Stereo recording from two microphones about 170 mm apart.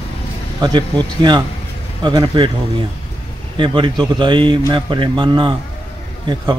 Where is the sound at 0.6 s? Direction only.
25° right (ahead or behind).